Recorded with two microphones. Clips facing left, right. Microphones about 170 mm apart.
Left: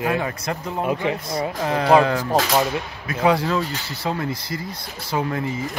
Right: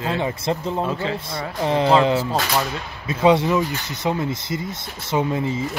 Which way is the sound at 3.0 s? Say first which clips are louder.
Right 3 dB; 20° right (ahead or behind).